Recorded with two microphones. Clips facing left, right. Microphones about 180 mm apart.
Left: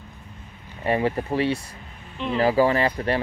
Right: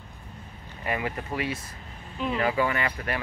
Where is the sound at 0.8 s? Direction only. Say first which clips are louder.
Left 8 dB; 30° left (ahead or behind).